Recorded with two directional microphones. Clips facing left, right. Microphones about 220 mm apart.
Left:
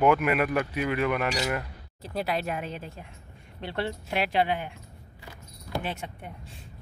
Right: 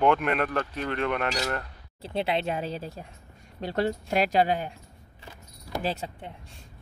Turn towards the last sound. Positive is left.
turn(degrees=-30)  # may be behind; listen again after turning